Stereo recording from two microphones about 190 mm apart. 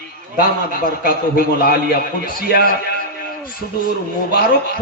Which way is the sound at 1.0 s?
50° left (ahead or behind).